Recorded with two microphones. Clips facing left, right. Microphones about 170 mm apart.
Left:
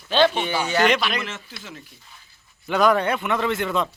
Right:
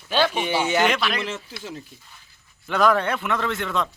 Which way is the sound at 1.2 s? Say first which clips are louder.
Right 4 dB; 30° right (ahead or behind).